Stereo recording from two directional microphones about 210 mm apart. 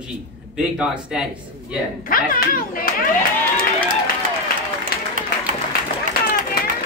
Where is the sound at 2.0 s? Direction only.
40° left (ahead or behind).